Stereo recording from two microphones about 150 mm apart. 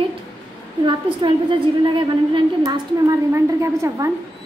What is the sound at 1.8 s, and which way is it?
A woman's voice, 30° right (ahead or behind).